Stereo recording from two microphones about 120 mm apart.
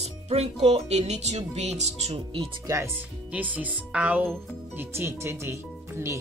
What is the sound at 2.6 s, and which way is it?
Speech, 25° right (ahead or behind).